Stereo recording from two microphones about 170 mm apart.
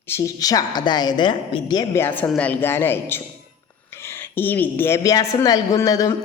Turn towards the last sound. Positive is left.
turn(degrees=20)  # may be behind; listen again after turning